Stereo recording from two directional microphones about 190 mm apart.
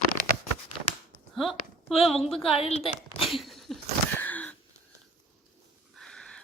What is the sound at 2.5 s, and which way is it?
Speech, 30° left (ahead or behind).